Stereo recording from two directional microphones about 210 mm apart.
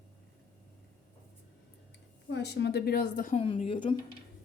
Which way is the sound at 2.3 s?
55° left (ahead or behind).